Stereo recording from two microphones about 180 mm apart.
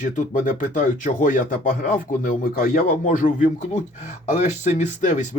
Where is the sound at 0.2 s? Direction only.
45° left (ahead or behind).